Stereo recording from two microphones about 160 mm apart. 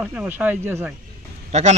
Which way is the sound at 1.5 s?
45° right (ahead or behind).